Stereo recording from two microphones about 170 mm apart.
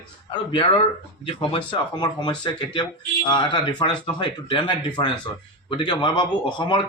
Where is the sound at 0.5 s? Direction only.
30° left (ahead or behind).